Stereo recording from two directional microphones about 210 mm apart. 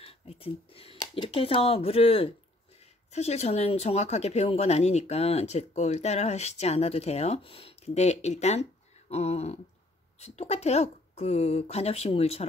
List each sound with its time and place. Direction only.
0.0 s a woman's voice: 30° left (ahead or behind)